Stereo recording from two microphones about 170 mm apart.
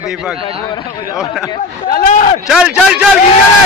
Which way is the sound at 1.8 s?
50° left (ahead or behind).